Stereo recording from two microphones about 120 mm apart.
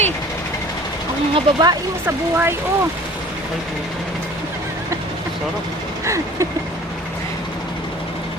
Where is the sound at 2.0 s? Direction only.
15° right (ahead or behind).